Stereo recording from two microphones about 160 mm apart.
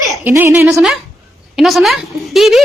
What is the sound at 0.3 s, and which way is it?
Speech, 15° right (ahead or behind).